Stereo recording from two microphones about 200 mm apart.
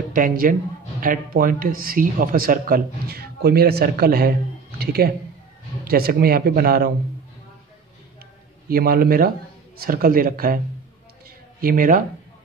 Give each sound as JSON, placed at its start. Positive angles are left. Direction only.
{"t": 0.1, "sound": "speech", "side_deg": -45}
{"t": 8.6, "sound": "speech", "side_deg": -50}
{"t": 11.6, "sound": "speech", "side_deg": -45}